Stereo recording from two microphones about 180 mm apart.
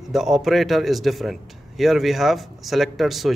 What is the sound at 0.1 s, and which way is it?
A man's voice, centre (ahead or behind).